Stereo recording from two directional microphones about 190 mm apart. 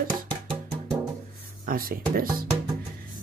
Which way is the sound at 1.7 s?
50° right (ahead or behind).